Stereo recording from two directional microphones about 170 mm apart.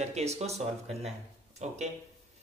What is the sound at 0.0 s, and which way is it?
Speech, 40° right (ahead or behind).